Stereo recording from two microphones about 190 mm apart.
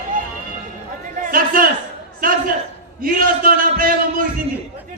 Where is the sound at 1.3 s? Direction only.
50° right (ahead or behind).